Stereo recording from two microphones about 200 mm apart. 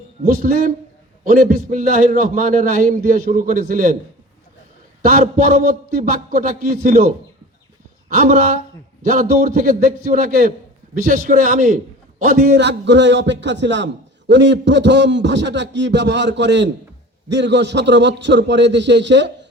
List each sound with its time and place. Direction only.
0.3 s a man's voice: 45° right (ahead or behind)
5.0 s a man's voice: 45° right (ahead or behind)
8.1 s a man's voice: 45° right (ahead or behind); by 19.3 s 60° right (ahead or behind)